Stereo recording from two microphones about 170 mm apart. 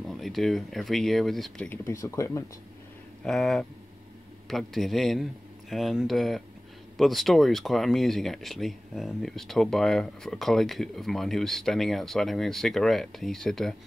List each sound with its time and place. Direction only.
0.0 s speech: centre (ahead or behind)
1.7 s speech: 15° left (ahead or behind)
3.3 s speech: centre (ahead or behind)